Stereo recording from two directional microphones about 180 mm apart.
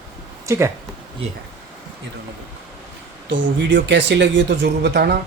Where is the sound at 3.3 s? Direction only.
90° right; by 5.1 s 70° right (ahead or behind).